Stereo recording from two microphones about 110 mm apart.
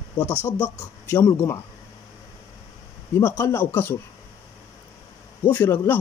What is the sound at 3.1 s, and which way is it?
Speech, 20° left (ahead or behind).